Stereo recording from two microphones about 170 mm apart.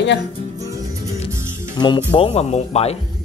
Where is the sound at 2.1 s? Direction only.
35° left (ahead or behind).